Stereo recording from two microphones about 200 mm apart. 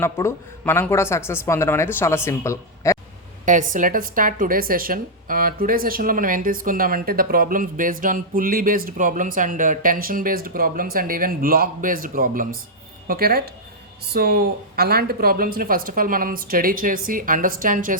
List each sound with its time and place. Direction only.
0.0 s speech: 10° left (ahead or behind)
3.4 s a woman's voice: 40° right (ahead or behind)